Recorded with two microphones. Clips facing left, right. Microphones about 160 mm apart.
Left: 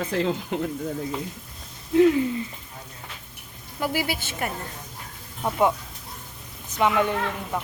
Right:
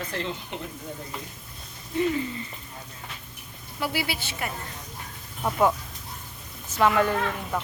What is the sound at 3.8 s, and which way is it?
Speech, 45° left (ahead or behind).